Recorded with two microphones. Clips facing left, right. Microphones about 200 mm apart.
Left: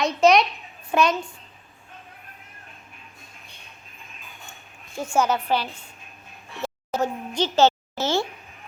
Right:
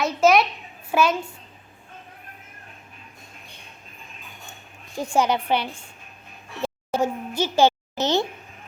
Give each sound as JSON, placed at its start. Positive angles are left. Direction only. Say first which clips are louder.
{"t": 0.0, "sound": "a child's voice", "louder": "even", "side_deg": -5}
{"t": 5.1, "sound": "a woman's voice", "louder": "right 1 dB", "side_deg": -15}
{"t": 6.9, "sound": "a sound", "louder": "right 1 dB", "side_deg": -10}